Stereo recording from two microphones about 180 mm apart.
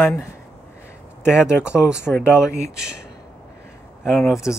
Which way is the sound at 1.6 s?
5° right (ahead or behind).